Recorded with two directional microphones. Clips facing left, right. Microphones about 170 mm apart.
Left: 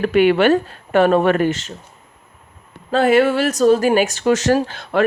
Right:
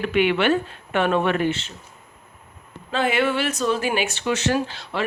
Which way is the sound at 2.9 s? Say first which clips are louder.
Left 7 dB; 40° left (ahead or behind).